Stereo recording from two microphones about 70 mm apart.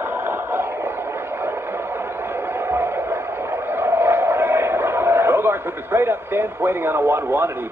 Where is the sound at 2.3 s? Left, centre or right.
Right.